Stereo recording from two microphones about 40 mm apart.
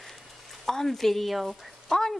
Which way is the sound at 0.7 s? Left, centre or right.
Centre.